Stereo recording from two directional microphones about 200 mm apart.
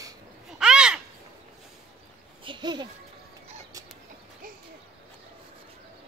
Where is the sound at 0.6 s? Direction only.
5° right (ahead or behind).